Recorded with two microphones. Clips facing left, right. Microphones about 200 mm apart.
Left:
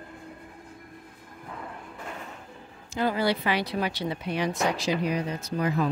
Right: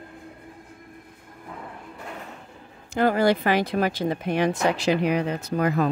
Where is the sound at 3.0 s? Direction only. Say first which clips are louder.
Right 6 dB; 50° right (ahead or behind).